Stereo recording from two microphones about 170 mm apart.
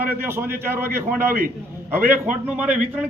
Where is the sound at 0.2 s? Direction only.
15° right (ahead or behind).